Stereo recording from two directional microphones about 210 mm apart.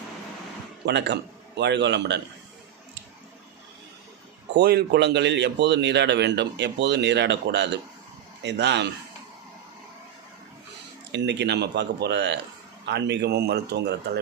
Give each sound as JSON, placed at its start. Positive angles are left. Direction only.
{"t": 0.9, "sound": "a man's voice", "side_deg": -55}
{"t": 4.5, "sound": "a man's voice", "side_deg": -50}
{"t": 11.1, "sound": "a man's voice", "side_deg": -55}